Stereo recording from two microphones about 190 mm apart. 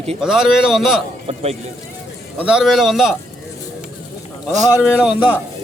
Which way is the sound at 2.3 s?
5° right (ahead or behind).